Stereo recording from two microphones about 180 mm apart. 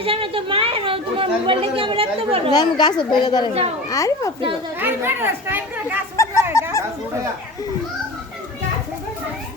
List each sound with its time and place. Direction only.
0.0 s speech: 30° right (ahead or behind)
2.5 s a woman's voice: 25° left (ahead or behind)
4.8 s speech: 10° right (ahead or behind)
6.2 s fowl: 15° left (ahead or behind)
6.5 s a sound: 15° left (ahead or behind)